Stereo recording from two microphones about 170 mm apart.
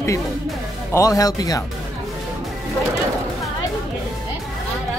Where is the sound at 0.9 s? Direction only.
20° left (ahead or behind).